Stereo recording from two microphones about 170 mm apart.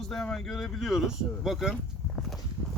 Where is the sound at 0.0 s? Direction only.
5° left (ahead or behind).